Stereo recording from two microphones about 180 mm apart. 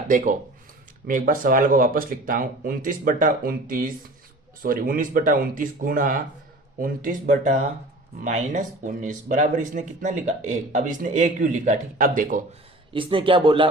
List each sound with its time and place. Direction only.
0.1 s speech: 45° right (ahead or behind)
12.9 s speech: 30° right (ahead or behind)